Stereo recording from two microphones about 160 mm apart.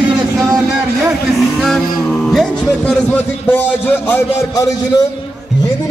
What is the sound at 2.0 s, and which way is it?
A man's voice, 5° left (ahead or behind).